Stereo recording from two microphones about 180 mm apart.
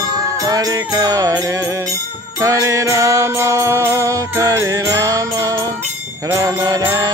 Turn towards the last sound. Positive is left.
turn(degrees=-20)  # may be behind; listen again after turning